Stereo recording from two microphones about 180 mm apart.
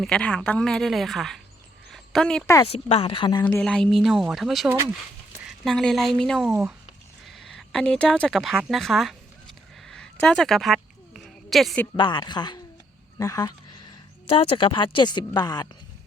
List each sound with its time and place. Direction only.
0.0 s a woman's voice: 5° left (ahead or behind)
1.9 s a sound: 5° left (ahead or behind)
2.6 s speech: 35° left (ahead or behind)
3.4 s a woman's voice: 5° left (ahead or behind)
6.5 s speech: 15° right (ahead or behind)
7.3 s speech: centre (ahead or behind)
9.9 s a sound: 5° left (ahead or behind)
11.9 s speech: 25° left (ahead or behind)
13.1 s a sound: 20° left (ahead or behind)
14.3 s speech: 30° left (ahead or behind)